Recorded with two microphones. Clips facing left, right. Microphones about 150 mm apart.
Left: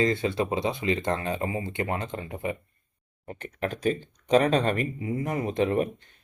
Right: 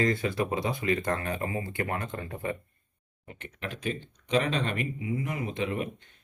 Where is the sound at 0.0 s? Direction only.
25° left (ahead or behind).